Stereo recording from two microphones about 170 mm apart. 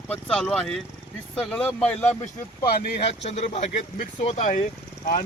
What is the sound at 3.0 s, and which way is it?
Speech, 40° left (ahead or behind).